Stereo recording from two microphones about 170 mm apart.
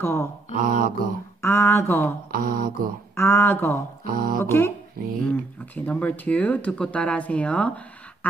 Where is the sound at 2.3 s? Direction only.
55° right (ahead or behind).